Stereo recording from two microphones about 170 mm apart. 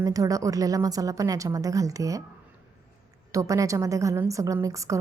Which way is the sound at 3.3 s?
20° right (ahead or behind).